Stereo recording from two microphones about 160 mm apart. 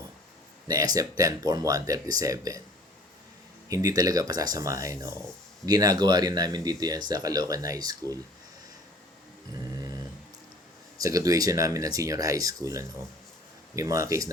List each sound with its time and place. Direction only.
0.7 s speech: 25° right (ahead or behind)
3.7 s speech: 20° right (ahead or behind)
10.9 s speech: 20° right (ahead or behind)